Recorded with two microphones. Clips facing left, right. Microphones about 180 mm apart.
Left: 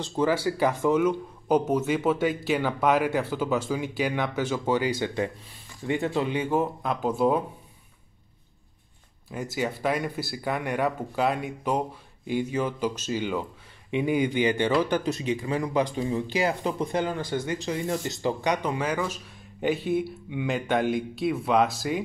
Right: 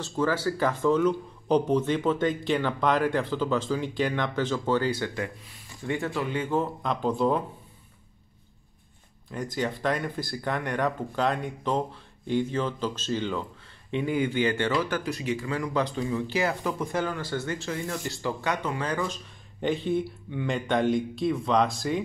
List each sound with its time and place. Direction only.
0.2 s speech: 15° left (ahead or behind)
9.3 s speech: 5° left (ahead or behind)